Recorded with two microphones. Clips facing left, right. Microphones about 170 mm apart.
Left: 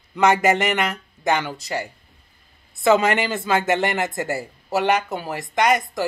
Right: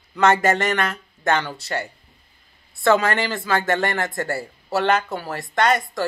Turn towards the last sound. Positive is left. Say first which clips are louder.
# even
turn(degrees=15)  # may be behind; listen again after turning